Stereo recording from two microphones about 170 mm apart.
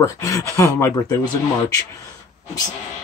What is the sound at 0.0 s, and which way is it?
Speech, 20° left (ahead or behind).